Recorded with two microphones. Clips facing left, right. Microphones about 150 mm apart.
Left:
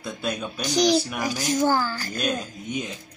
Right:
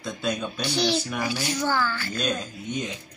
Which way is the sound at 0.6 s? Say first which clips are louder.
Left 8 dB; 40° left (ahead or behind).